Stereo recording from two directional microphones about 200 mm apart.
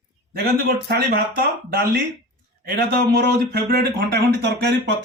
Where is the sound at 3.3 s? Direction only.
55° right (ahead or behind).